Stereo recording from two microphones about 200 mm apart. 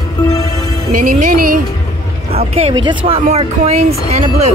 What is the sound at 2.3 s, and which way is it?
Speech, 30° right (ahead or behind).